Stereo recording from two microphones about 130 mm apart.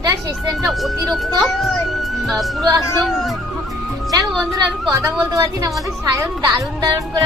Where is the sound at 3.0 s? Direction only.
Centre (ahead or behind).